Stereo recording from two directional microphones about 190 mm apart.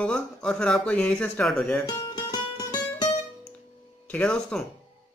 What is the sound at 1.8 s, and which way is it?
Speech, 20° left (ahead or behind).